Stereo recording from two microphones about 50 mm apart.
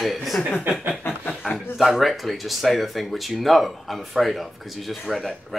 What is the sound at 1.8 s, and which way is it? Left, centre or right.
Speech, centre.